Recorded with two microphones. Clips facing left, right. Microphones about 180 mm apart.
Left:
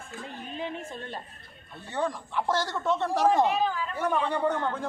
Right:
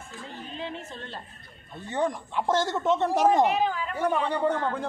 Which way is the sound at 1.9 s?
20° right (ahead or behind).